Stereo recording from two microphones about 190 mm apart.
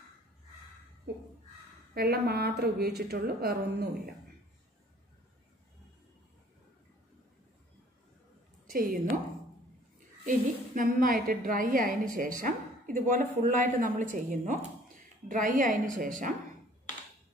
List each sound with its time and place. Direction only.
2.0 s a woman's voice: 55° right (ahead or behind)
8.6 s a woman's voice: 50° right (ahead or behind)